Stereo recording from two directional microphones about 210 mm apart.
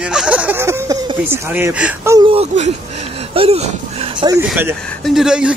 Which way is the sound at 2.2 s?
25° right (ahead or behind).